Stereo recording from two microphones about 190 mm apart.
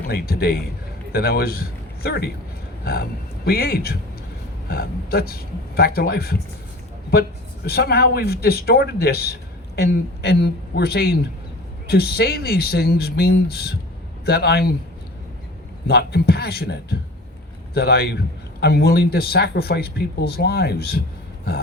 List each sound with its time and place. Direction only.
0.1 s a man's voice: 55° left (ahead or behind)
15.9 s a man's voice: 60° left (ahead or behind)